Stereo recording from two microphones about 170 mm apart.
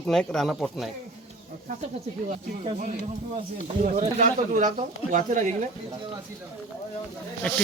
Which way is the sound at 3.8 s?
45° right (ahead or behind).